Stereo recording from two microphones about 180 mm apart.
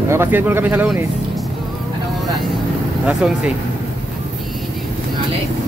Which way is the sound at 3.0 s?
5° right (ahead or behind).